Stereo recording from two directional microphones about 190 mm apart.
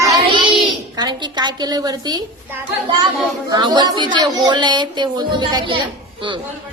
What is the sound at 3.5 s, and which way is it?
A woman's voice, 20° right (ahead or behind).